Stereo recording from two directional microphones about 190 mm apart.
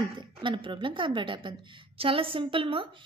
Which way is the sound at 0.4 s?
25° right (ahead or behind).